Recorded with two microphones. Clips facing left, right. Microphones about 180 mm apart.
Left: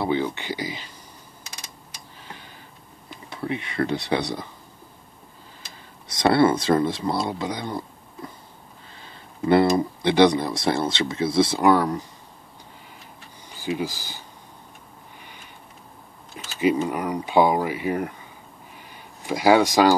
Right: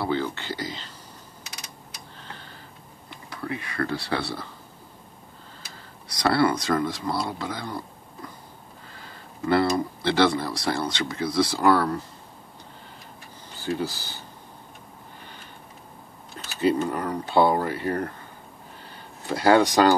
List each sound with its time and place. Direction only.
0.0 s speech: 15° left (ahead or behind)
2.1 s tick: 10° left (ahead or behind)
3.3 s speech: 20° left (ahead or behind)
6.0 s speech: 25° left (ahead or behind)
13.5 s speech: 10° left (ahead or behind)
16.5 s speech: 10° left (ahead or behind)
19.2 s speech: 10° left (ahead or behind)